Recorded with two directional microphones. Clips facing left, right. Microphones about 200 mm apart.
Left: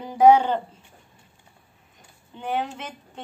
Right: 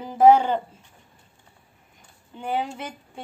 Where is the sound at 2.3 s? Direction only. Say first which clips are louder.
Even; 5° right (ahead or behind).